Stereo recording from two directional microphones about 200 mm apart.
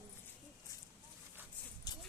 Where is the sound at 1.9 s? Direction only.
20° left (ahead or behind).